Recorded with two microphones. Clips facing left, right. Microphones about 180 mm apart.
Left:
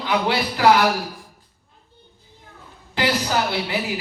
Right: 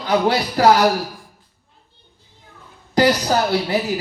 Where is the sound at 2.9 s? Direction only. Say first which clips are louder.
Right 6 dB; 40° right (ahead or behind).